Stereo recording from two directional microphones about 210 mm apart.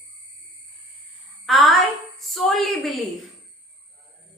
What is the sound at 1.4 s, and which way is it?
A woman's voice, centre (ahead or behind).